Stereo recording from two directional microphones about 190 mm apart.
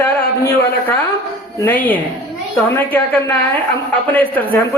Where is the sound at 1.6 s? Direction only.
10° left (ahead or behind).